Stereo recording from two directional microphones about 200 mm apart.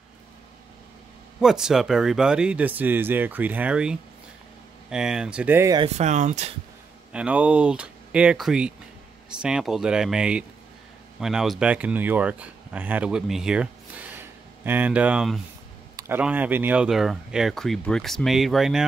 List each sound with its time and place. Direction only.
1.4 s speech: 5° right (ahead or behind)
5.8 s speech: 35° right (ahead or behind)
7.1 s speech: 5° right (ahead or behind)